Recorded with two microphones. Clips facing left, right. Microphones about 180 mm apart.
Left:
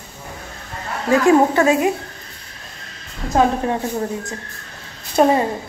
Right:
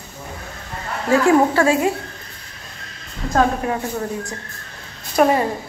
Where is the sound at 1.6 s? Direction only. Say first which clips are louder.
Left 1 dB; 20° left (ahead or behind).